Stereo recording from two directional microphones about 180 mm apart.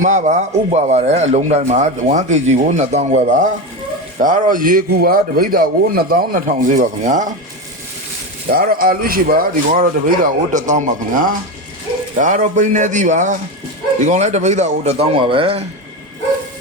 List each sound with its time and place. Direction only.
0.0 s a man's voice: 40° right (ahead or behind)
8.4 s a man's voice: 55° right (ahead or behind); by 15.6 s 30° right (ahead or behind)